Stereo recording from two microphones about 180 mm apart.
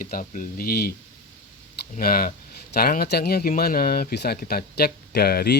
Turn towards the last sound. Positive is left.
turn(degrees=60)  # may be behind; listen again after turning